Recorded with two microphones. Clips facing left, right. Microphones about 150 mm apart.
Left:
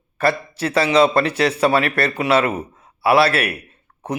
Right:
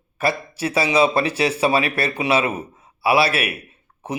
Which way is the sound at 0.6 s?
60° left (ahead or behind).